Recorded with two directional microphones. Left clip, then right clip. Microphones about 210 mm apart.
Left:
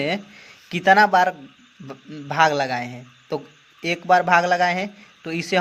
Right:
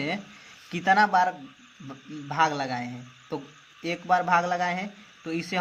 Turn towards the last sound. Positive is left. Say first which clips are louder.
# left 8 dB
turn(degrees=40)  # may be behind; listen again after turning